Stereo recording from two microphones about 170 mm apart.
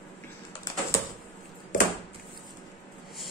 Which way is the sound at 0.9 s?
15° left (ahead or behind).